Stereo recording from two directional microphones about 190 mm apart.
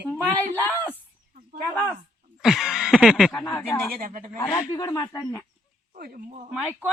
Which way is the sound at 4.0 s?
45° right (ahead or behind).